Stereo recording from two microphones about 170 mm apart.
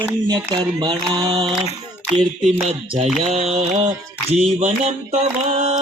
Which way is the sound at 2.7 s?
35° right (ahead or behind).